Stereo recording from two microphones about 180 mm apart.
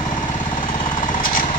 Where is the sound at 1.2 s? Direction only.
50° left (ahead or behind).